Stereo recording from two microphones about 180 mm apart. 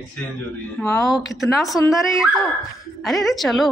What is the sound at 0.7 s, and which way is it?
Speech, 10° left (ahead or behind).